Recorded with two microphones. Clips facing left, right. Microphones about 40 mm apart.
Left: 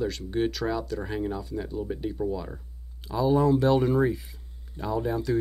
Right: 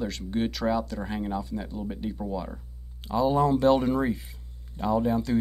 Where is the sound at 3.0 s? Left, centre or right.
Centre.